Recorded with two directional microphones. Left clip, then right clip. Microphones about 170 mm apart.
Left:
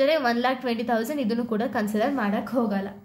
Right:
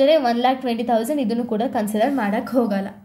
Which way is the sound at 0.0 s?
10° right (ahead or behind).